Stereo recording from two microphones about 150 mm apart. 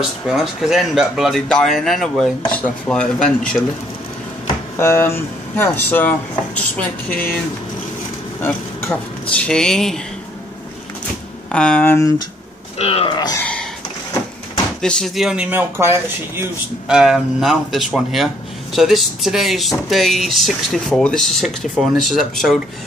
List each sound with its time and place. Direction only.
0.3 s speech: centre (ahead or behind)
4.7 s speech: 15° left (ahead or behind)
8.4 s speech: 15° left (ahead or behind)
11.5 s speech: 5° left (ahead or behind)
12.7 s speech: 40° left (ahead or behind)
14.8 s speech: 5° left (ahead or behind); by 16.4 s 15° right (ahead or behind)
16.8 s speech: 5° right (ahead or behind)